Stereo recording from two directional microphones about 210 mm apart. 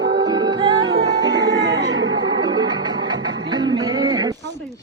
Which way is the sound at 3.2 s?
60° right (ahead or behind).